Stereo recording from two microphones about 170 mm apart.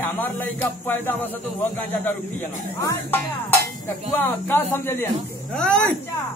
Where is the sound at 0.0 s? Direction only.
10° left (ahead or behind).